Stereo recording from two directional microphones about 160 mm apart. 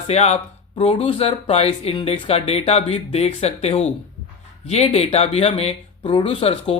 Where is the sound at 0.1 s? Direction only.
45° left (ahead or behind).